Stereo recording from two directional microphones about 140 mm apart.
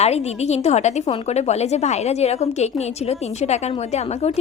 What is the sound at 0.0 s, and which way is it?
A woman's voice, 50° left (ahead or behind).